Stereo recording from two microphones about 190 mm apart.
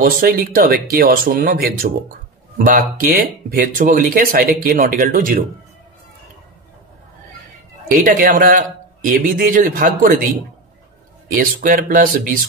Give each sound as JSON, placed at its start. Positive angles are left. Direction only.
{"t": 0.0, "sound": "speech", "side_deg": -50}
{"t": 7.9, "sound": "speech", "side_deg": -45}
{"t": 11.3, "sound": "speech", "side_deg": -45}